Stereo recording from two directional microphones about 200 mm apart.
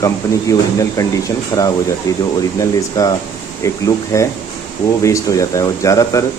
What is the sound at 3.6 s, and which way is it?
Speech, 15° left (ahead or behind).